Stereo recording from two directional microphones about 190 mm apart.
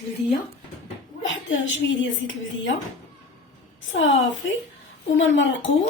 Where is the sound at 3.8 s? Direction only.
90° left.